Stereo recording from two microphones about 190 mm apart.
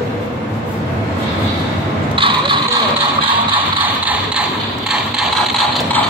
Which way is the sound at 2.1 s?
25° right (ahead or behind).